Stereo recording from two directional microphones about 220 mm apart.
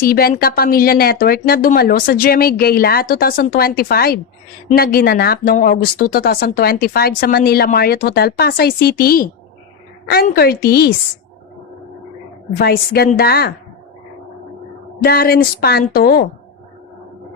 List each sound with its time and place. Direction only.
0.0 s speech: 45° left (ahead or behind)
12.5 s speech: 45° left (ahead or behind)
15.0 s speech: 45° left (ahead or behind)